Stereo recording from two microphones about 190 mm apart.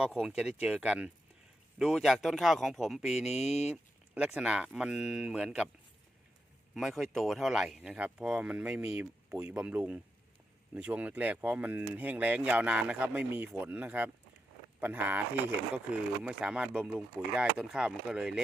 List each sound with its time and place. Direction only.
0.0 s speech: 5° right (ahead or behind)
3.2 s speech: 35° left (ahead or behind)
3.7 s speech: 5° right (ahead or behind)
6.7 s speech: centre (ahead or behind)